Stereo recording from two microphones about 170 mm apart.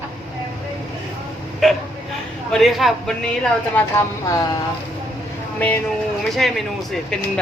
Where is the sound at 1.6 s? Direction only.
Centre (ahead or behind).